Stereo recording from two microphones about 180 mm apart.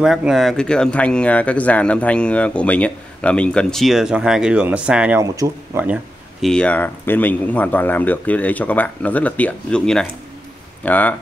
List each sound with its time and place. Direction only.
0.0 s speech: centre (ahead or behind)
5.2 s speech: 20° right (ahead or behind)
6.4 s speech: 5° left (ahead or behind)